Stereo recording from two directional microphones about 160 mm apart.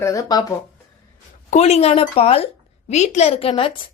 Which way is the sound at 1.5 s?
40° left (ahead or behind).